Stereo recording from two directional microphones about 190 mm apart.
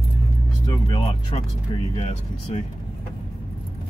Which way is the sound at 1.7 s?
30° left (ahead or behind).